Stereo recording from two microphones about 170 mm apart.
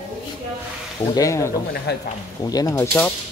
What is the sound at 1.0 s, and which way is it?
Speech, 20° left (ahead or behind).